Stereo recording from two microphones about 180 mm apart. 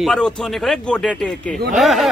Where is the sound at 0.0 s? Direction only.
5° left (ahead or behind).